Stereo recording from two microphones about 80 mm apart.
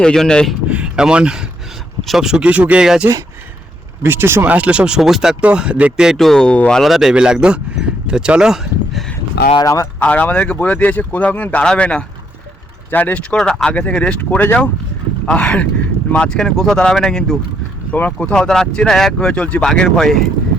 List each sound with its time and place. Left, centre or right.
0.0 s speech: centre
0.7 s a sound: centre
2.0 s speech: centre
2.8 s speech: centre
4.0 s speech: right
4.5 s speech: centre
6.1 s speech: centre
6.8 s speech: centre
9.6 s speech: left
10.0 s speech: centre
13.3 s speech: centre
17.9 s speech: centre